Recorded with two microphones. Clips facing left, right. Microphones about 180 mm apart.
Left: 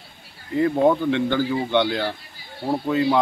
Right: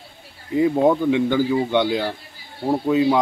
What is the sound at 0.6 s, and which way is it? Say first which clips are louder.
Speech: right 1 dB; 10° right (ahead or behind).